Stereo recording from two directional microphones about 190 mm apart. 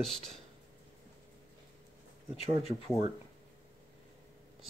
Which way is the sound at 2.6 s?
30° left (ahead or behind).